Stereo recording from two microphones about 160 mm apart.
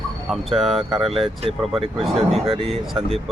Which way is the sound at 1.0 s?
35° right (ahead or behind).